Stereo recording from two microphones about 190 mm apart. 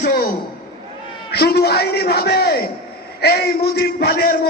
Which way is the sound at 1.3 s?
55° left (ahead or behind).